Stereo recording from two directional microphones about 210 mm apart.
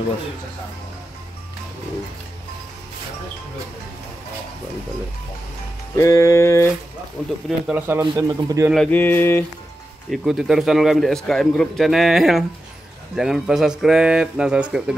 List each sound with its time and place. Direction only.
5.9 s music: 15° left (ahead or behind)
7.4 s speech: 5° right (ahead or behind)
8.0 s speech: 20° right (ahead or behind)
8.7 s music: 5° left (ahead or behind)
10.1 s speech: centre (ahead or behind)